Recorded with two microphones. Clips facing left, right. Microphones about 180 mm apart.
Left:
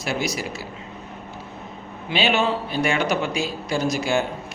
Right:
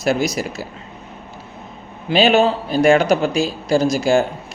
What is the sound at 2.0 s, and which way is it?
A man's voice, 40° right (ahead or behind).